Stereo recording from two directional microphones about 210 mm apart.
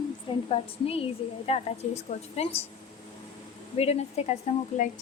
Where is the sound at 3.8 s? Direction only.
30° left (ahead or behind).